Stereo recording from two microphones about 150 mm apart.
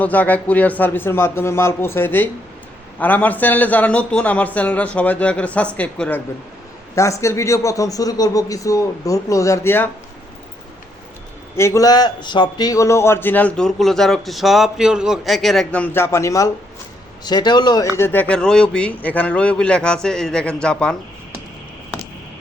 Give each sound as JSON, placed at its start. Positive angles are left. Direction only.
{"t": 0.0, "sound": "a man's voice", "side_deg": 10}
{"t": 11.5, "sound": "a man's voice", "side_deg": 20}
{"t": 17.9, "sound": "a man's voice", "side_deg": 15}